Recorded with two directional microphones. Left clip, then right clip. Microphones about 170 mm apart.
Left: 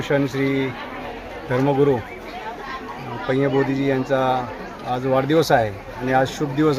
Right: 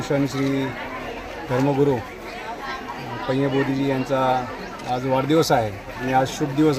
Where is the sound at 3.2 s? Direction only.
15° left (ahead or behind).